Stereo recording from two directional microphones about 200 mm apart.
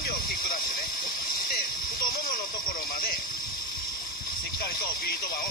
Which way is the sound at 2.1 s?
45° left (ahead or behind).